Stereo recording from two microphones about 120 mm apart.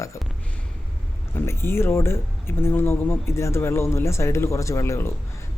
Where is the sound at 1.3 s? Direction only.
20° left (ahead or behind).